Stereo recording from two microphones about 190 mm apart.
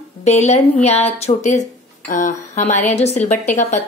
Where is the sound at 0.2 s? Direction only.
35° left (ahead or behind).